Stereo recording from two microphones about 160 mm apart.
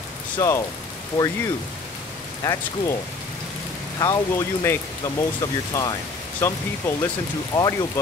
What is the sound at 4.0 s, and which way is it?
Speech, 20° left (ahead or behind).